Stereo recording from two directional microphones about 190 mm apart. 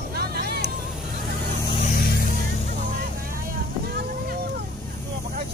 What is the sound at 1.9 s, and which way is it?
Vehicle, 50° left (ahead or behind).